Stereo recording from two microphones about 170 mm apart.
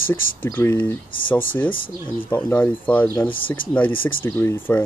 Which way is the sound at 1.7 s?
55° left (ahead or behind).